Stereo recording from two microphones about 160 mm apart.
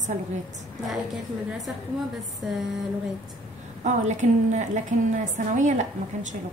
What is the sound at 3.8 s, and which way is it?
A woman's voice, 50° right (ahead or behind).